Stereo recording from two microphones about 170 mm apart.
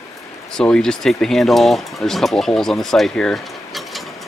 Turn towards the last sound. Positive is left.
turn(degrees=0)  # may be behind; listen again after turning